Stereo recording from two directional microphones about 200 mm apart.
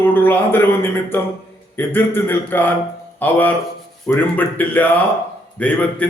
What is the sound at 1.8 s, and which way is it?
A man's voice, 10° left (ahead or behind).